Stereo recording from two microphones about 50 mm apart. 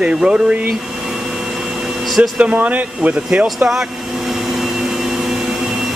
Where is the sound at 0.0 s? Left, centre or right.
Right.